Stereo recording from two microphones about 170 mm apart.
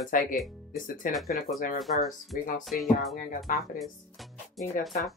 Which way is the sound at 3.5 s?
50° left (ahead or behind).